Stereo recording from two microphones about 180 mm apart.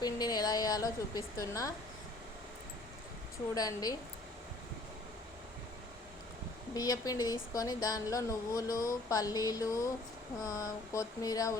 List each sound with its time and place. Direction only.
0.0 s a woman's voice: 20° left (ahead or behind)
3.5 s speech: 20° left (ahead or behind)
6.7 s speech: 20° left (ahead or behind)